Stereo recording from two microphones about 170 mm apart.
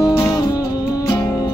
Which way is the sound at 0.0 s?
15° left (ahead or behind).